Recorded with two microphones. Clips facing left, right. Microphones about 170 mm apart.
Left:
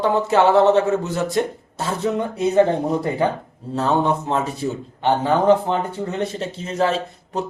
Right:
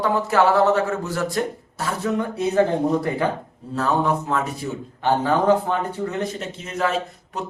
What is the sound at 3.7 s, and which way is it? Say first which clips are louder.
A man's voice: left 2 dB; 25° left (ahead or behind).